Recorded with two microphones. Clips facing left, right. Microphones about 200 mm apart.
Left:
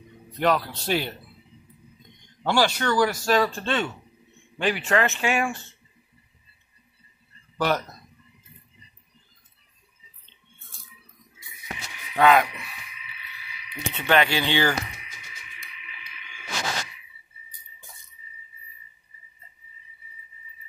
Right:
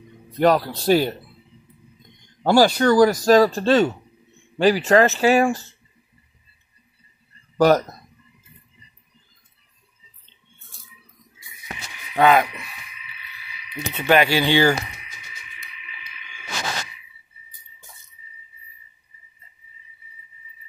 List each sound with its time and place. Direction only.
0.4 s speech: 40° right (ahead or behind)
2.4 s speech: 40° right (ahead or behind)
7.5 s speech: 40° right (ahead or behind)
12.2 s speech: 5° right (ahead or behind)
13.7 s speech: 10° right (ahead or behind)